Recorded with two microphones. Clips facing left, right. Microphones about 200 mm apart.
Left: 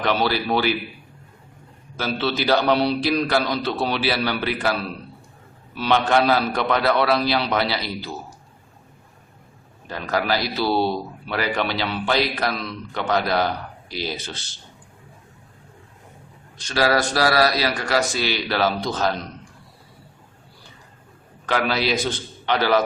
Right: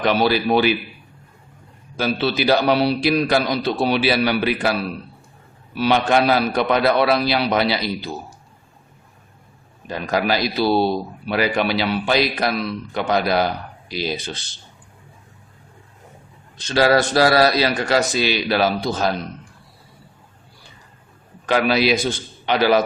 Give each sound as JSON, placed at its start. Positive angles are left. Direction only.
{"t": 0.0, "sound": "a man's voice", "side_deg": -15}
{"t": 2.0, "sound": "a man's voice", "side_deg": -10}
{"t": 9.8, "sound": "a man's voice", "side_deg": -15}
{"t": 16.6, "sound": "a man's voice", "side_deg": -25}
{"t": 21.4, "sound": "a man's voice", "side_deg": -15}